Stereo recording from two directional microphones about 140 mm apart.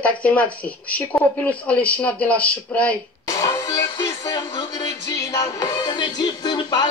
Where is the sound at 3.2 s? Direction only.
20° left (ahead or behind).